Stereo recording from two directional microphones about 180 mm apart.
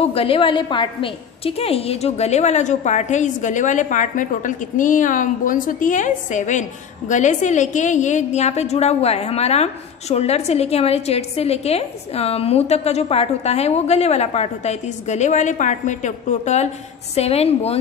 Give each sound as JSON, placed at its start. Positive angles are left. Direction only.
{"t": 0.0, "sound": "a woman's voice", "side_deg": 30}